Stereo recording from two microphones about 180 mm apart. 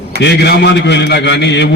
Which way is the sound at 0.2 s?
65° left (ahead or behind).